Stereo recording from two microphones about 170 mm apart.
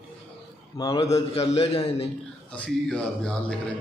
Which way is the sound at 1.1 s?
35° left (ahead or behind).